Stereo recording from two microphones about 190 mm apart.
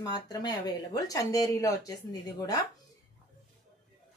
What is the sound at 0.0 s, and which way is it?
Speech, 20° left (ahead or behind).